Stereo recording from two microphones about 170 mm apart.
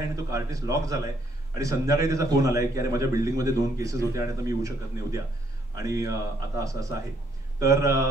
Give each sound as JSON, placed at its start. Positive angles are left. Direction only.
{"t": 0.1, "sound": "a man's voice", "side_deg": -20}